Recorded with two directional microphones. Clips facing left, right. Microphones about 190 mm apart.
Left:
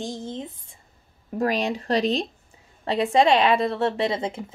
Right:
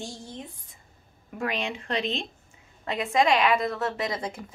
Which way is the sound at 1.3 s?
40° left (ahead or behind).